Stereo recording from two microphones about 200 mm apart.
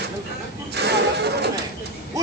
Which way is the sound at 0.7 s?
55° right (ahead or behind).